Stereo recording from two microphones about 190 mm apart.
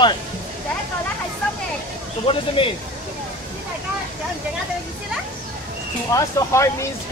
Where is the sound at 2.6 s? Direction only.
25° left (ahead or behind).